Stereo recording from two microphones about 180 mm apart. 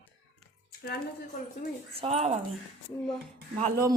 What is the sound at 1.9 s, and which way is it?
Speech, 35° right (ahead or behind).